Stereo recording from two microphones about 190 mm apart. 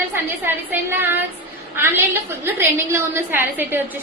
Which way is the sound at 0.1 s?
10° right (ahead or behind).